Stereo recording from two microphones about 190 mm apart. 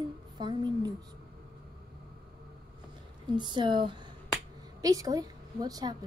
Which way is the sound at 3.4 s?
25° right (ahead or behind).